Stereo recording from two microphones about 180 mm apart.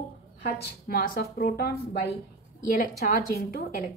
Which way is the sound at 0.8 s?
55° left (ahead or behind).